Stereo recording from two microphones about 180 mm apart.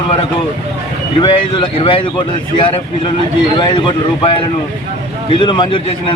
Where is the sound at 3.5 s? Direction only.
25° left (ahead or behind).